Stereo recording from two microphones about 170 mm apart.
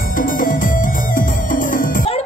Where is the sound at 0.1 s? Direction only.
55° left (ahead or behind).